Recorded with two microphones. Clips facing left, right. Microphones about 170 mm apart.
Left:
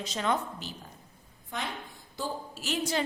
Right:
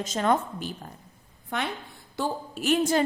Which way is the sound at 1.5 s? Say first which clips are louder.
Right 5 dB; 65° right (ahead or behind).